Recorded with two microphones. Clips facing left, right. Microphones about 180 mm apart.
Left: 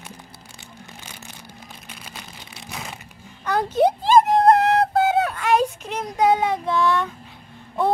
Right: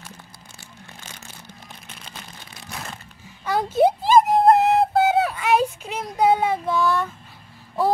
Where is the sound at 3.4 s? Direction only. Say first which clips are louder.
Even; 5° right (ahead or behind).